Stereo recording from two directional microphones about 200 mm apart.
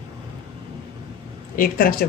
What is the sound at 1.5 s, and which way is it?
Speech, 45° left (ahead or behind).